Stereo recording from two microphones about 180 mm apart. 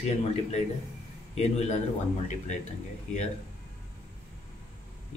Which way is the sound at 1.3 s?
35° left (ahead or behind).